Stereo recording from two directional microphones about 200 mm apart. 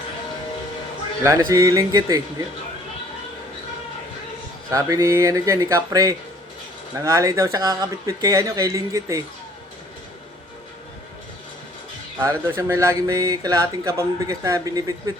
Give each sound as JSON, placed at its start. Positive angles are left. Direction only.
{"t": 1.2, "sound": "speech", "side_deg": -15}
{"t": 4.7, "sound": "speech", "side_deg": -15}
{"t": 12.2, "sound": "speech", "side_deg": -15}